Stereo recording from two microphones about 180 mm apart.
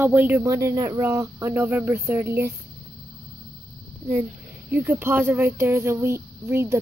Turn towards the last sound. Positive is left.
turn(degrees=-15)  # may be behind; listen again after turning